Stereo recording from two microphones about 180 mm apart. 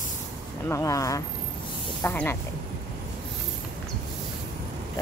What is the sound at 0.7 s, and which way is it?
Speech, 15° left (ahead or behind).